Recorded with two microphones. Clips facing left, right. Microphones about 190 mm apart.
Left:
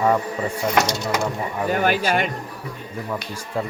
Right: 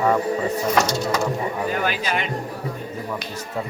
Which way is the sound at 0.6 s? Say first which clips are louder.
Left 3 dB; 15° left (ahead or behind).